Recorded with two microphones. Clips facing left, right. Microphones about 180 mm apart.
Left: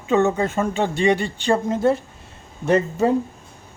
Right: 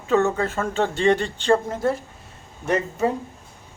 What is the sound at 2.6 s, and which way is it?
Speech, 30° left (ahead or behind).